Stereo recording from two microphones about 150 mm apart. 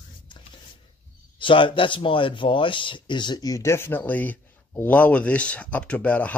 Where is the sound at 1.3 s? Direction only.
35° left (ahead or behind).